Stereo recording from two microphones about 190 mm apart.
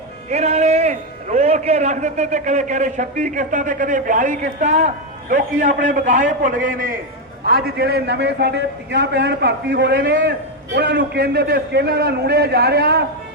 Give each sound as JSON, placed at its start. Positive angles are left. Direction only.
{"t": 0.3, "sound": "a man's voice", "side_deg": -35}